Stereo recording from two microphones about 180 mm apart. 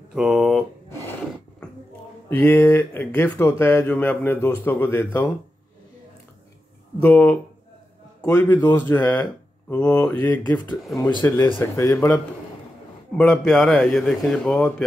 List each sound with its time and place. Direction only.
0.1 s speech: 5° right (ahead or behind)
2.2 s speech: 10° left (ahead or behind)
7.0 s a man's voice: 10° left (ahead or behind)
10.1 s speech: 20° left (ahead or behind)
13.2 s a man's voice: centre (ahead or behind)